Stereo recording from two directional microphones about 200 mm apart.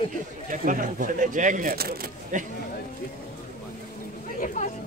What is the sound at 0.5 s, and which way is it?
Speech, 40° right (ahead or behind).